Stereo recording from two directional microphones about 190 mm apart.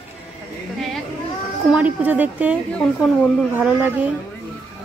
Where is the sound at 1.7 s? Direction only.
10° right (ahead or behind).